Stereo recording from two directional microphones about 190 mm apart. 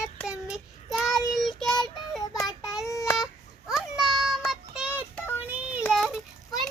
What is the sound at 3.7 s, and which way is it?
Child singing, centre (ahead or behind).